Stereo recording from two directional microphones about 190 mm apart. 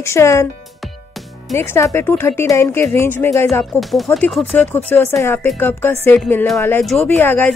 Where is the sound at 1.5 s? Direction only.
15° left (ahead or behind).